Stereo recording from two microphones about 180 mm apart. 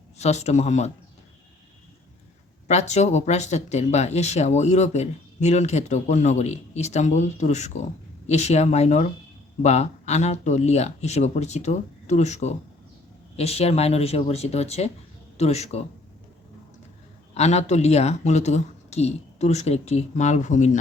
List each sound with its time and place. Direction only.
0.2 s speech: 40° left (ahead or behind)
2.6 s speech: 40° left (ahead or behind)
17.3 s speech: 35° left (ahead or behind)